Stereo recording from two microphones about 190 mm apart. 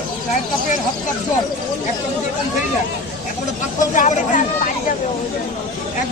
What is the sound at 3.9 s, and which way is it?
Speech, 40° left (ahead or behind).